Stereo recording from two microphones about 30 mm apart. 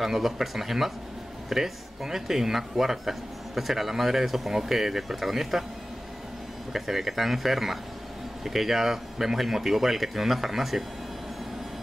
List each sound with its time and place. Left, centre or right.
0.0 s speech: centre
6.7 s speech: centre